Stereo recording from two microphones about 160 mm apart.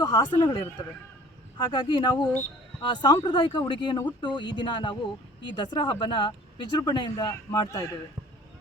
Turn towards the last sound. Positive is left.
turn(degrees=25)  # may be behind; listen again after turning